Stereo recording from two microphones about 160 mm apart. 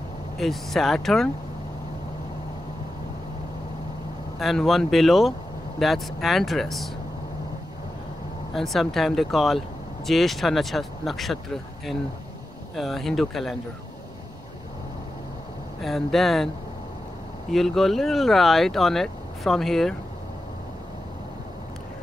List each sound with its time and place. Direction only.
0.4 s speech: centre (ahead or behind)
4.4 s speech: centre (ahead or behind)
8.5 s speech: centre (ahead or behind)
15.8 s speech: centre (ahead or behind)
17.5 s speech: centre (ahead or behind)